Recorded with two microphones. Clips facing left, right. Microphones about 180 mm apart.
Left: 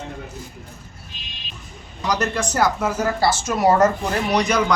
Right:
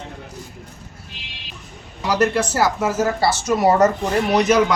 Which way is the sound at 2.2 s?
5° right (ahead or behind).